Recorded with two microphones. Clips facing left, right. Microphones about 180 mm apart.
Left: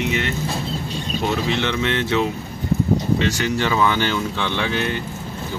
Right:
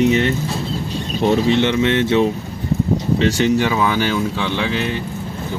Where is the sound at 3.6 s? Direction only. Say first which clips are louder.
Right 2 dB; 10° right (ahead or behind).